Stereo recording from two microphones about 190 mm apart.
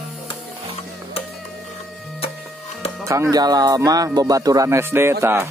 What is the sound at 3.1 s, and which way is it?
Speech, 20° right (ahead or behind).